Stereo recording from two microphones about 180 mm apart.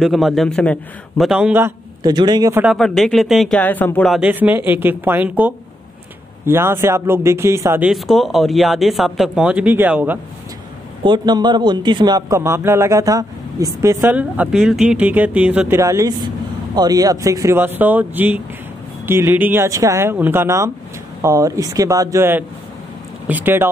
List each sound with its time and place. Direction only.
0.0 s speech: centre (ahead or behind)
2.0 s a man's voice: 25° right (ahead or behind)
2.6 s speech: centre (ahead or behind)
4.1 s speech: 10° right (ahead or behind)
7.9 s speech: centre (ahead or behind)
11.1 s a man's voice: 25° right (ahead or behind); by 15.8 s 5° right (ahead or behind)
15.8 s speech: 20° right (ahead or behind)